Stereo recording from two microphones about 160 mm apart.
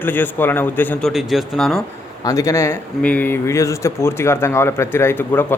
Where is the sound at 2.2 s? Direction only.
20° left (ahead or behind).